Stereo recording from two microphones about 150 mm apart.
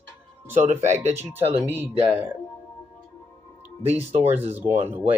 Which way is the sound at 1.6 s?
15° right (ahead or behind).